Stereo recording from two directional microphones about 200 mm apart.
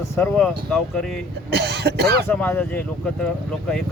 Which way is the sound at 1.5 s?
55° right (ahead or behind).